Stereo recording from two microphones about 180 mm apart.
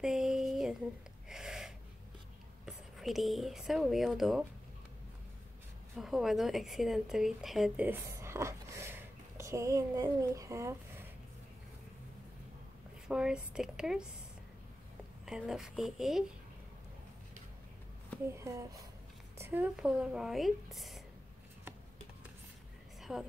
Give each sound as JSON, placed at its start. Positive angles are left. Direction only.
{"t": 0.0, "sound": "a sound", "side_deg": -5}
{"t": 1.3, "sound": "gasp", "side_deg": 0}
{"t": 2.6, "sound": "speech", "side_deg": 0}
{"t": 5.9, "sound": "a woman's voice", "side_deg": 0}
{"t": 13.1, "sound": "speech", "side_deg": -5}
{"t": 15.2, "sound": "speech", "side_deg": -5}
{"t": 18.2, "sound": "speech", "side_deg": -15}
{"t": 23.1, "sound": "speech", "side_deg": 0}